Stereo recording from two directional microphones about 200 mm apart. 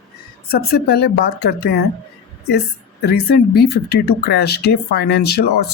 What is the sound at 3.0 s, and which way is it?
A woman's voice, 50° left (ahead or behind).